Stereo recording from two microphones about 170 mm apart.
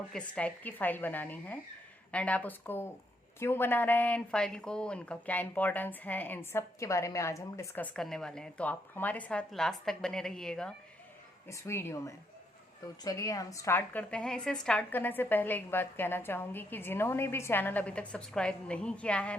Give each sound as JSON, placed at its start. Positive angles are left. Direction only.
{"t": 0.1, "sound": "a woman's voice", "side_deg": 10}
{"t": 7.9, "sound": "a woman's voice", "side_deg": 5}
{"t": 11.4, "sound": "a woman's voice", "side_deg": 15}